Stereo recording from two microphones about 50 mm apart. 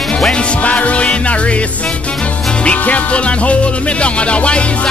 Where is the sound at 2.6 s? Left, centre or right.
Left.